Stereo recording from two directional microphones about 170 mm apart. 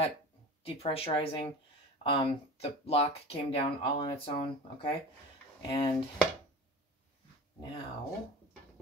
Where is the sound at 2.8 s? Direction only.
35° left (ahead or behind).